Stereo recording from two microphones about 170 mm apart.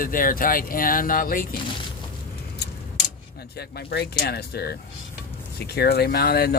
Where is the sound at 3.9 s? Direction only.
70° left (ahead or behind).